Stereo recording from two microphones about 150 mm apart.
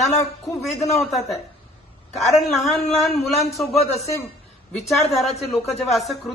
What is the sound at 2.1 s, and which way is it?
Speech, centre (ahead or behind).